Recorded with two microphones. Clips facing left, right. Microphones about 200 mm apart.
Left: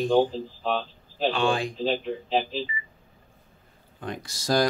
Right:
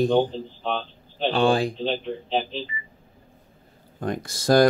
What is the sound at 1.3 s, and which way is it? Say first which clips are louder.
Speech: right 5 dB; 35° right (ahead or behind).